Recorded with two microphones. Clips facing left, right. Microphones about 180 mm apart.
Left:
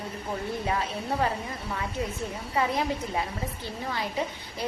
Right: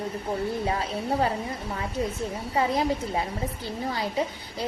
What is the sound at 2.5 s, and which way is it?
A woman's voice, 30° right (ahead or behind).